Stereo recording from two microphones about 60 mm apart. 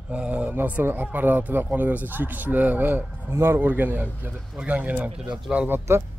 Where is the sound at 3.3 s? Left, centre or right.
Right.